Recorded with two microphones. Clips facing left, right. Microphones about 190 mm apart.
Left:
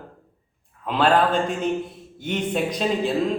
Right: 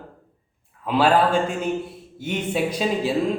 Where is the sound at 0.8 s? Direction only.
5° right (ahead or behind).